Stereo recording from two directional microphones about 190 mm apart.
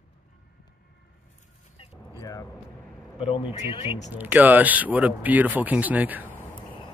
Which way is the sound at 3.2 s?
30° left (ahead or behind).